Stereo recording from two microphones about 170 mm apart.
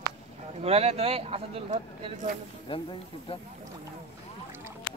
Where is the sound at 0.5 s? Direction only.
35° right (ahead or behind).